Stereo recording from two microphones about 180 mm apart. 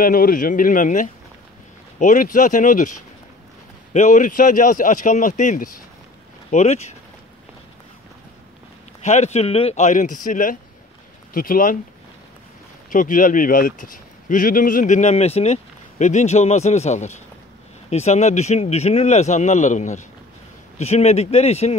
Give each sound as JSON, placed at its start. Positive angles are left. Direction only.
{"t": 0.0, "sound": "a man's voice", "side_deg": 55}
{"t": 9.0, "sound": "a man's voice", "side_deg": 40}
{"t": 12.9, "sound": "a man's voice", "side_deg": 45}